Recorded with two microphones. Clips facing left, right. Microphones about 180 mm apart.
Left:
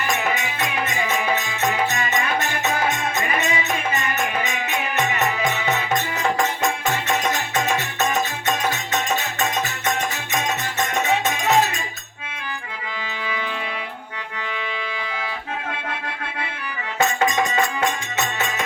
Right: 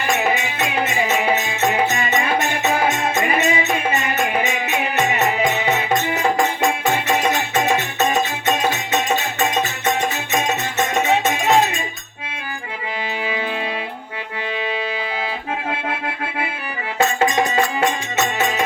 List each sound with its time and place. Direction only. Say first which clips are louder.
0.3 s music: right 3 dB; 25° right (ahead or behind)
7.3 s music: right 4 dB; 20° right (ahead or behind)
17.0 s music: right 3 dB; 25° right (ahead or behind)